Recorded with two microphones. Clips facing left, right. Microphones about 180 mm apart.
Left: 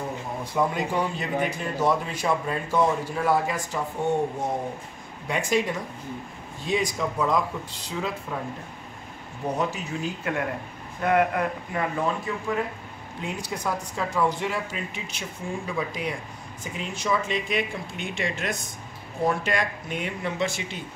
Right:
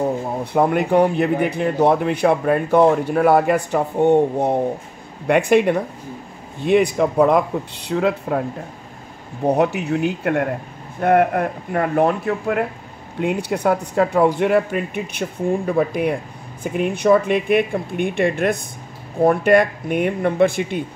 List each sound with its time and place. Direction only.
0.4 s a man's voice: 60° right (ahead or behind)
9.5 s a man's voice: 65° right (ahead or behind)